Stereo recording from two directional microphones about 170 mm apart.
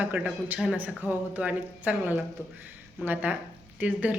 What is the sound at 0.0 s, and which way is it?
Speech, 10° right (ahead or behind).